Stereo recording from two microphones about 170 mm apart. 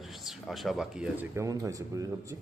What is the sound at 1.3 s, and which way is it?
Speech, 20° right (ahead or behind).